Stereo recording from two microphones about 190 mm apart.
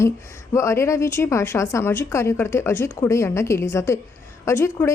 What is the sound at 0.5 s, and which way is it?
Speech, 15° left (ahead or behind).